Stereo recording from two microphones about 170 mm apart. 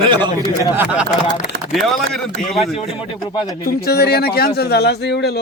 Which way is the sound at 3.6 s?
70° left (ahead or behind).